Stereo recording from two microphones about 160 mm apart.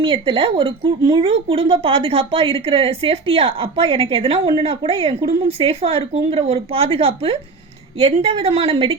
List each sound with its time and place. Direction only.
0.0 s a woman's voice: 35° right (ahead or behind)